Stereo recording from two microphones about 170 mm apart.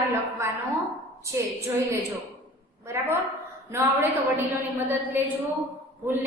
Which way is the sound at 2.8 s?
15° right (ahead or behind).